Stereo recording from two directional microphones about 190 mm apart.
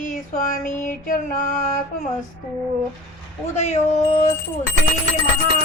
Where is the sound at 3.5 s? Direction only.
35° left (ahead or behind).